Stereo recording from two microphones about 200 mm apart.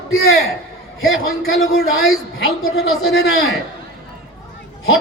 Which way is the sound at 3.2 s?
55° left (ahead or behind).